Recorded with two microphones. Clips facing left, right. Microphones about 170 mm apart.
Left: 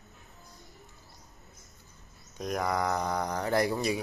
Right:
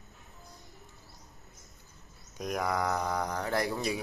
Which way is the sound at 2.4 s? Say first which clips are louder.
Left 1 dB; 5° right (ahead or behind).